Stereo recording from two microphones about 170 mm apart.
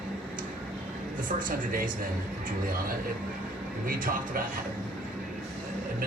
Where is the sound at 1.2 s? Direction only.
55° right (ahead or behind).